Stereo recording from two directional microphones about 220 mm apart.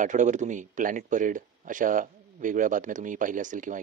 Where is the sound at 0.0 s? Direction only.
35° right (ahead or behind).